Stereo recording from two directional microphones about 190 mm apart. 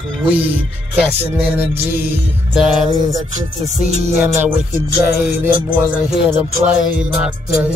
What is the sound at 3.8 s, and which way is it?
Music, 35° right (ahead or behind).